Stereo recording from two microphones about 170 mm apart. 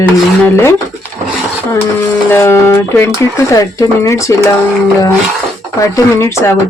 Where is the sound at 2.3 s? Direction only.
15° left (ahead or behind).